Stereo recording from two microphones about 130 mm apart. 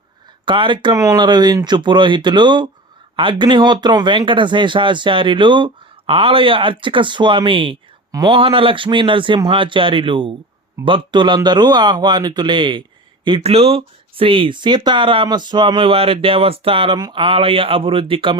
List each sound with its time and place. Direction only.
0.4 s speech: 40° right (ahead or behind)
0.9 s speech: 25° right (ahead or behind); by 18.3 s 40° right (ahead or behind)